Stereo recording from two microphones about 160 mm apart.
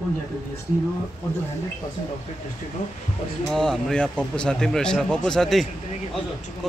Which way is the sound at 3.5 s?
5° left (ahead or behind).